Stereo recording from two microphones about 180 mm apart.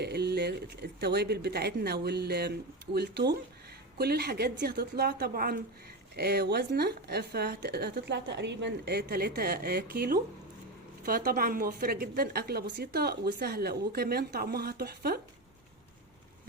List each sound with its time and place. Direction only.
0.0 s a woman's voice: 65° right (ahead or behind)